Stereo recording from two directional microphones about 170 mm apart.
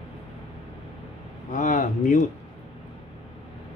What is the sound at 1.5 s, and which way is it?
Speech, 50° left (ahead or behind).